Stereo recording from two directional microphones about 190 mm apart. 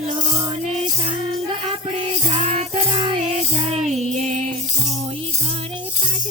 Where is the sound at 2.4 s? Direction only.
35° right (ahead or behind).